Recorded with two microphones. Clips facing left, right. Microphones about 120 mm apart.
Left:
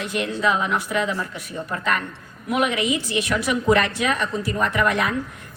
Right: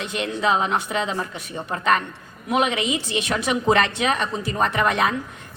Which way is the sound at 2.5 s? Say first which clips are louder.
Even; 25° right (ahead or behind).